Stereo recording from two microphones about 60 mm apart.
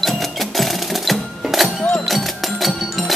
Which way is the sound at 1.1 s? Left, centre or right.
Centre.